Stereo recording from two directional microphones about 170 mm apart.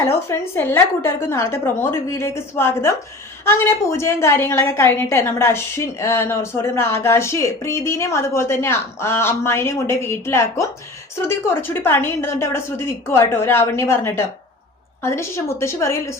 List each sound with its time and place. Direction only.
0.0 s a woman's voice: 15° left (ahead or behind)